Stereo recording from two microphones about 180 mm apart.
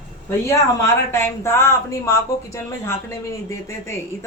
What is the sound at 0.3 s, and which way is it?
Speech, 15° left (ahead or behind).